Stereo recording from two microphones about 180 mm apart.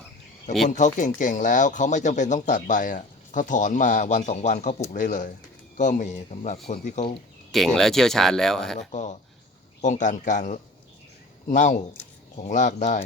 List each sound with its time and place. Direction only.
0.7 s speech: 45° left (ahead or behind)
7.5 s speech: centre (ahead or behind)
8.9 s speech: 40° left (ahead or behind)